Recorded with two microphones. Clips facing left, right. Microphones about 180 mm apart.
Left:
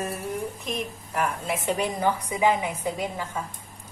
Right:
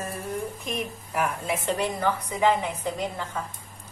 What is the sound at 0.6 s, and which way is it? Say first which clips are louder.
A woman's voice: even; 5° right (ahead or behind).